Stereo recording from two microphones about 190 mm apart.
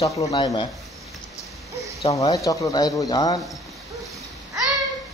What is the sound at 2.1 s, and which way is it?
Speech, 20° left (ahead or behind).